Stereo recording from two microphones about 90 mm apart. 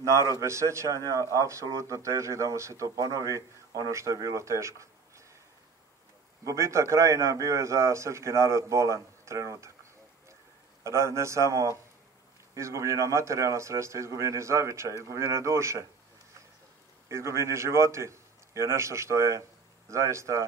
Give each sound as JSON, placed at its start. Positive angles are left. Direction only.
{"t": 0.0, "sound": "a man's voice", "side_deg": -35}
{"t": 6.4, "sound": "a man's voice", "side_deg": -35}
{"t": 10.8, "sound": "a man's voice", "side_deg": -30}
{"t": 17.1, "sound": "a man's voice", "side_deg": -30}